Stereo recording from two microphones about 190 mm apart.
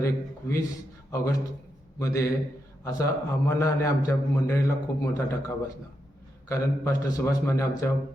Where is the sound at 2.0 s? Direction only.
15° left (ahead or behind).